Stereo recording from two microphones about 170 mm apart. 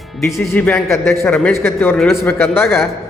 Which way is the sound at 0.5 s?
10° left (ahead or behind).